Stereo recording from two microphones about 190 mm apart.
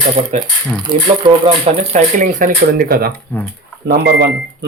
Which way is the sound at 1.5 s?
35° right (ahead or behind).